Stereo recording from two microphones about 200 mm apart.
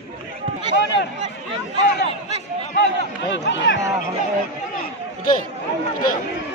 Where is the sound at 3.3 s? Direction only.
60° left (ahead or behind).